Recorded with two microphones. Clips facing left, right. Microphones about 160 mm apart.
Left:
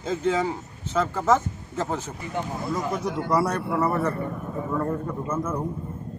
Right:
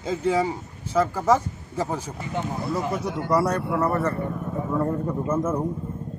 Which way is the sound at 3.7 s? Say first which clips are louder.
Right 1 dB; 5° left (ahead or behind).